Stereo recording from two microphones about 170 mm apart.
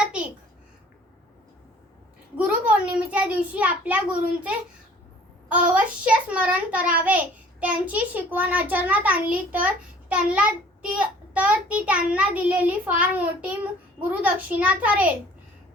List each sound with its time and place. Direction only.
0.0 s a sound: 5° right (ahead or behind)
2.3 s a child's voice: 10° right (ahead or behind)
5.5 s a child's voice: 10° right (ahead or behind)